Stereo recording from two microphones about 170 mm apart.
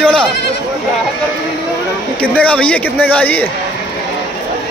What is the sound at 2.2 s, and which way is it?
Speech, 5° left (ahead or behind).